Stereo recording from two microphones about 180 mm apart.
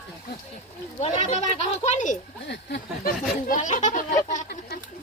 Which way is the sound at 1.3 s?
40° left (ahead or behind).